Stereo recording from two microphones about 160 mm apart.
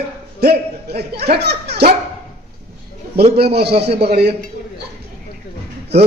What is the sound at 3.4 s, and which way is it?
Speech, 90° right.